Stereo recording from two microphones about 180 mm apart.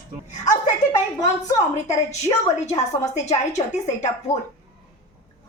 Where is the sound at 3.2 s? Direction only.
40° left (ahead or behind).